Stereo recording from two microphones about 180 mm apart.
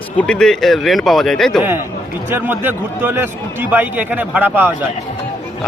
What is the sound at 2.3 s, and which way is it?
A man's voice, 10° right (ahead or behind).